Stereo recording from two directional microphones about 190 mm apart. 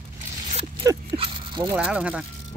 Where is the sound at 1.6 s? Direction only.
5° right (ahead or behind).